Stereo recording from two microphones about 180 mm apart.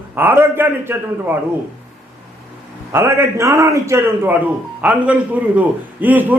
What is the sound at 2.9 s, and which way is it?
Speech, 15° right (ahead or behind).